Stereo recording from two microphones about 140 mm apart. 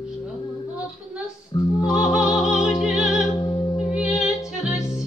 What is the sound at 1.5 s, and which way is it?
Music, 35° left (ahead or behind).